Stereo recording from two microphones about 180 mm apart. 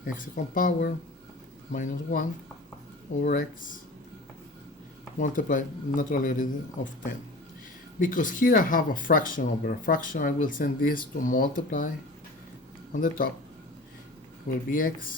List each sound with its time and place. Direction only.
0.0 s speech: 50° left (ahead or behind)
3.2 s speech: 50° left (ahead or behind)
5.2 s speech: 45° left (ahead or behind)
13.0 s speech: 50° left (ahead or behind)
14.7 s speech: 50° left (ahead or behind)